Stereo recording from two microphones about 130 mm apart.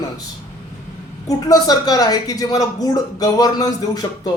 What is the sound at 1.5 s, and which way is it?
A man's voice, 30° left (ahead or behind).